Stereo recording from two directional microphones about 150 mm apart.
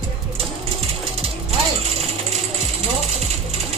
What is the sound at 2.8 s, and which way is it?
Ratchet, 45° right (ahead or behind).